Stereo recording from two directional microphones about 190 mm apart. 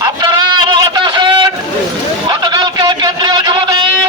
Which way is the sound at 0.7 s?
25° right (ahead or behind).